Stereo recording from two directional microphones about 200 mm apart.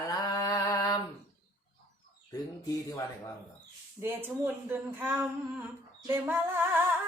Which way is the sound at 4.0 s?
10° right (ahead or behind).